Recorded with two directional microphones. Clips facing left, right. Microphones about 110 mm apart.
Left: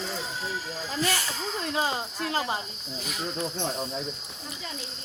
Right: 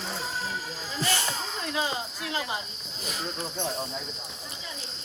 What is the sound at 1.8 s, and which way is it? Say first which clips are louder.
Cricket: left 1 dB; 40° left (ahead or behind).